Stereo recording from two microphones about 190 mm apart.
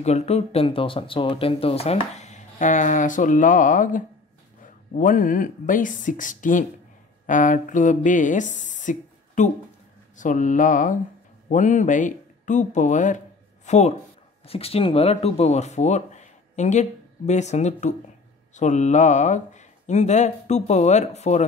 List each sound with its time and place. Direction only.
0.0 s speech: 35° left (ahead or behind)